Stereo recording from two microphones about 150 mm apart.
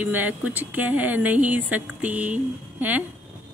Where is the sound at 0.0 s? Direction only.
10° right (ahead or behind).